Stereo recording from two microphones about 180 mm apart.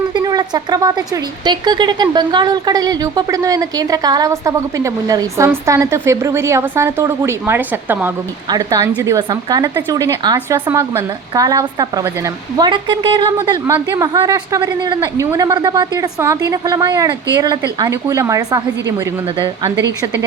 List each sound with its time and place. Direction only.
0.1 s speech: 20° right (ahead or behind)